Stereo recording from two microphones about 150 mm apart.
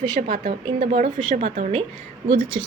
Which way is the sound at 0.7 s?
55° right (ahead or behind).